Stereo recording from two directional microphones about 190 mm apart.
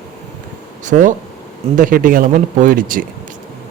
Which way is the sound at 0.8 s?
40° right (ahead or behind).